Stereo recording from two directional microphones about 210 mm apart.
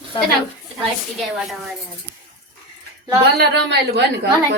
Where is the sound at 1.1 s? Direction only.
Centre (ahead or behind).